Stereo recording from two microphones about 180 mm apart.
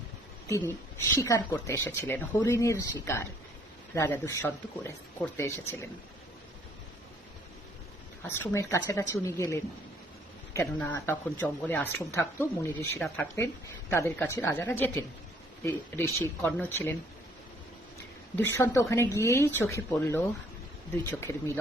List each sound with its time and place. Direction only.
0.4 s speech: 15° left (ahead or behind)
8.3 s speech: 15° left (ahead or behind)
18.3 s speech: 15° left (ahead or behind)